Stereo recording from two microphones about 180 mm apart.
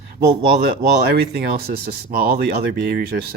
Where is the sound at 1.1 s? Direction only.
60° right (ahead or behind).